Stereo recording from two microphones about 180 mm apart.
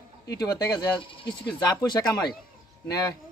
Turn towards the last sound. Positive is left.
turn(degrees=20)  # may be behind; listen again after turning